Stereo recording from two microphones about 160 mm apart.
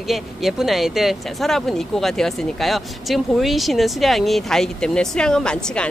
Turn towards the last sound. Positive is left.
turn(degrees=5)  # may be behind; listen again after turning